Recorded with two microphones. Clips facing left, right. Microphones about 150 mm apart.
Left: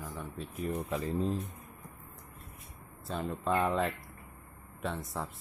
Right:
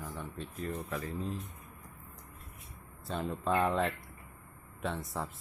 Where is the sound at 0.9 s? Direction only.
30° left (ahead or behind).